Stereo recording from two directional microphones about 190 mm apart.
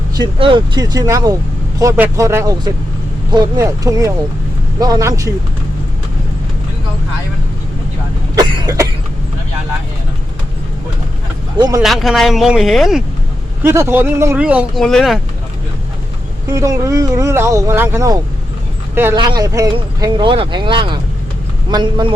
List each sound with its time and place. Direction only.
0.1 s speech: 25° right (ahead or behind)
8.4 s cough: 25° right (ahead or behind)
11.5 s speech: 20° right (ahead or behind)
11.8 s speech: centre (ahead or behind)
13.6 s speech: 10° right (ahead or behind)
16.5 s speech: 15° right (ahead or behind)